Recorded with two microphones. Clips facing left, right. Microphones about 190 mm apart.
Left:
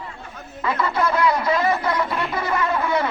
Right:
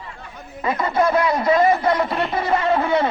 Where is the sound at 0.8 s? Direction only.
25° right (ahead or behind).